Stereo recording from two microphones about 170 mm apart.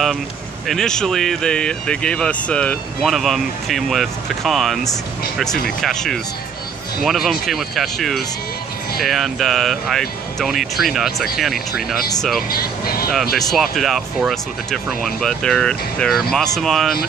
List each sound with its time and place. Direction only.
0.7 s speech: 5° left (ahead or behind)
12.4 s speech: 60° left (ahead or behind)
13.4 s speech: centre (ahead or behind)